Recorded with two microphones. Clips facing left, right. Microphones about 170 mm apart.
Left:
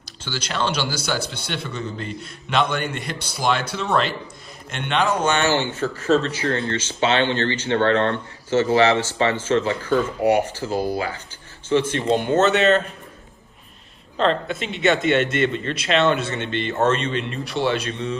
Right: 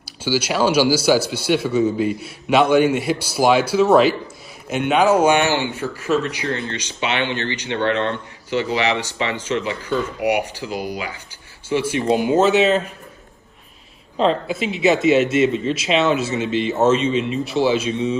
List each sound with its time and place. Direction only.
0.3 s a man's voice: 10° right (ahead or behind)
14.2 s speech: 5° right (ahead or behind)